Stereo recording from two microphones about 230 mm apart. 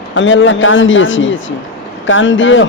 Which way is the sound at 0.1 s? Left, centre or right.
Left.